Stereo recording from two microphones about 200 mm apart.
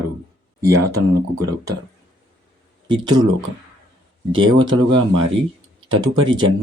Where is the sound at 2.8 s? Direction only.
20° right (ahead or behind).